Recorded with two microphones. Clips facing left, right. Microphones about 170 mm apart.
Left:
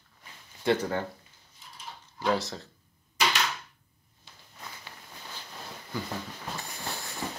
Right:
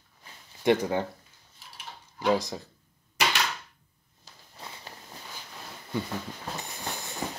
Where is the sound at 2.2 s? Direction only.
15° right (ahead or behind).